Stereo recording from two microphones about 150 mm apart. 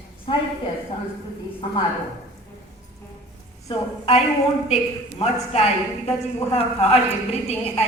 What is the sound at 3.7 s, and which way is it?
Speech, 45° left (ahead or behind).